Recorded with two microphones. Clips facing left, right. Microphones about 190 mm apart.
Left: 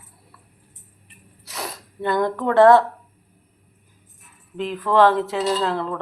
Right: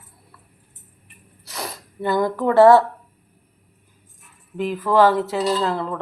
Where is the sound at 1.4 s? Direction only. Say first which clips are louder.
Even; centre (ahead or behind).